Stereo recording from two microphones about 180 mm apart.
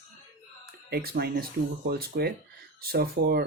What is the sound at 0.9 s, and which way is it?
Speech, 60° right (ahead or behind).